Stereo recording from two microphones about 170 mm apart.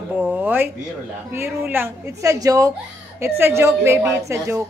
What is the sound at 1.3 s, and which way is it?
A woman's voice, 15° right (ahead or behind).